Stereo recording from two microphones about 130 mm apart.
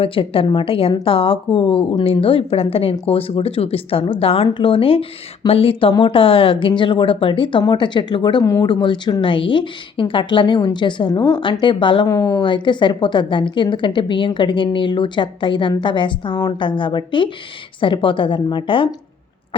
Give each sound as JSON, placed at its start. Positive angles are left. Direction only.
{"t": 0.0, "sound": "speech", "side_deg": 45}
{"t": 12.0, "sound": "speech", "side_deg": 25}